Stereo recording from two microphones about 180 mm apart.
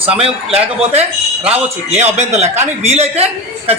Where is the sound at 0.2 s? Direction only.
35° right (ahead or behind).